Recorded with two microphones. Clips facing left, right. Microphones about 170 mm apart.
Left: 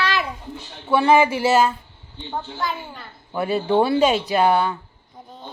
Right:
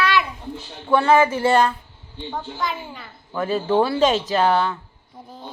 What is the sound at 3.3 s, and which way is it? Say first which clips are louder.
Speech: even; 15° left (ahead or behind).